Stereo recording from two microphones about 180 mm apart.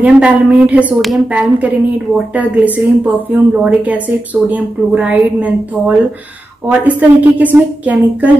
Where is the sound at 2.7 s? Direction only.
10° right (ahead or behind).